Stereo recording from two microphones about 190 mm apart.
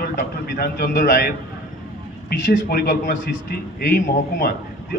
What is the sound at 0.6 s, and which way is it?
Speech, 50° left (ahead or behind).